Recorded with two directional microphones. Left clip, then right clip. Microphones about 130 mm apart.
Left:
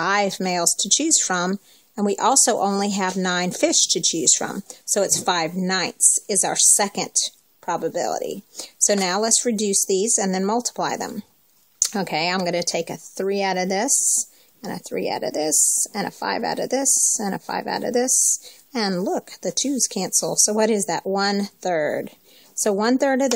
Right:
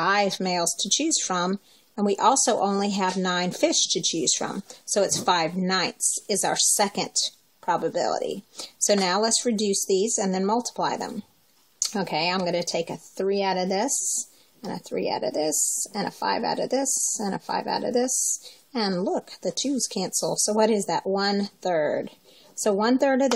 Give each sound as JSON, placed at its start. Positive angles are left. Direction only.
{"t": 0.0, "sound": "a woman's voice", "side_deg": 40}
{"t": 4.0, "sound": "speech", "side_deg": 0}
{"t": 4.3, "sound": "a woman's voice", "side_deg": 55}
{"t": 4.6, "sound": "speech", "side_deg": 0}
{"t": 5.2, "sound": "a woman's voice", "side_deg": 50}
{"t": 5.9, "sound": "speech", "side_deg": 0}
{"t": 6.2, "sound": "a woman's voice", "side_deg": 50}
{"t": 13.8, "sound": "speech", "side_deg": 0}
{"t": 14.6, "sound": "a woman's voice", "side_deg": 50}
{"t": 15.5, "sound": "speech", "side_deg": 0}
{"t": 15.9, "sound": "a woman's voice", "side_deg": 40}
{"t": 20.1, "sound": "speech", "side_deg": 0}
{"t": 20.4, "sound": "a woman's voice", "side_deg": 50}